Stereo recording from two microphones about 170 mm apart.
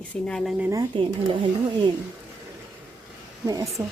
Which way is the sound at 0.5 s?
10° right (ahead or behind).